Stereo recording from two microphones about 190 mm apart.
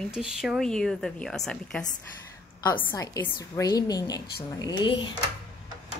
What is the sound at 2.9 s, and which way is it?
A woman's voice, 15° left (ahead or behind).